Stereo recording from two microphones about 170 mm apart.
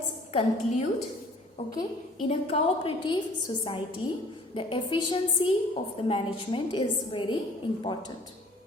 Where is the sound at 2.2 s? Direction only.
35° left (ahead or behind).